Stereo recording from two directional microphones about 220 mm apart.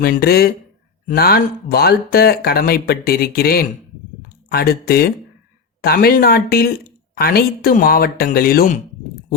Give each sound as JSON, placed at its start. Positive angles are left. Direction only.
{"t": 0.0, "sound": "speech", "side_deg": 45}